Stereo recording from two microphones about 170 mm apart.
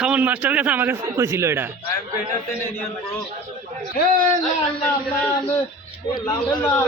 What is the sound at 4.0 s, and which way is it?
Speech, 55° left (ahead or behind).